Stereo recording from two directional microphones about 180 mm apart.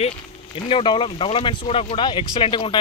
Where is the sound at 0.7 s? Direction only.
30° left (ahead or behind).